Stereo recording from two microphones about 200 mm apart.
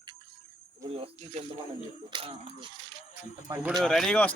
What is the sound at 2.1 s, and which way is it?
Speech, 25° right (ahead or behind).